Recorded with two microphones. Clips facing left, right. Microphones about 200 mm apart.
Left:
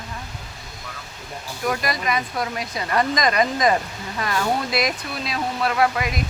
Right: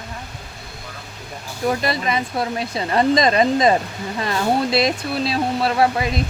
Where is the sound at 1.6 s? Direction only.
25° right (ahead or behind).